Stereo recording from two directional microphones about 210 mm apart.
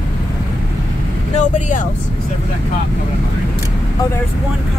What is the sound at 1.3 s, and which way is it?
Speech, 35° left (ahead or behind).